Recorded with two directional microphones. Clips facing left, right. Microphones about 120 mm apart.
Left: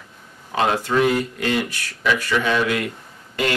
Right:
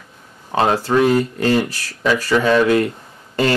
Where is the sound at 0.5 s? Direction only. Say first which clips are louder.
Right 4 dB; 35° right (ahead or behind).